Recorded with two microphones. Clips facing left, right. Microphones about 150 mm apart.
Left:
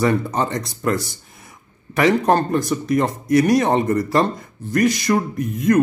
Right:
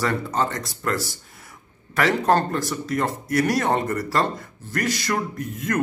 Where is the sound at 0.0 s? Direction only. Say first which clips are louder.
Left 4 dB; 15° left (ahead or behind).